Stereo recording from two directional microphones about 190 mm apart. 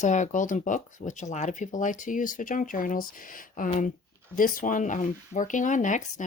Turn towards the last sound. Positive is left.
turn(degrees=40)  # may be behind; listen again after turning